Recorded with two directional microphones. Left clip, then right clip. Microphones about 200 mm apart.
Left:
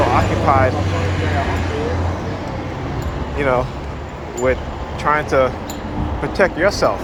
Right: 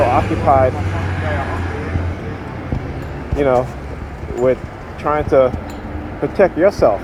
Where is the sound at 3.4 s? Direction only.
40° right (ahead or behind).